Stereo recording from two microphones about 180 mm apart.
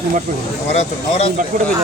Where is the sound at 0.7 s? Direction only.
35° left (ahead or behind).